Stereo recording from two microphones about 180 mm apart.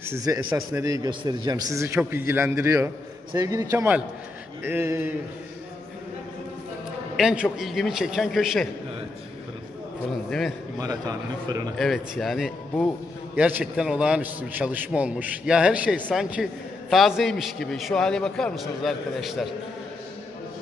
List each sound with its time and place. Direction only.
0.0 s a man's voice: 15° right (ahead or behind)
7.2 s a man's voice: 5° right (ahead or behind)
10.8 s a man's voice: 20° right (ahead or behind)
11.8 s a man's voice: centre (ahead or behind)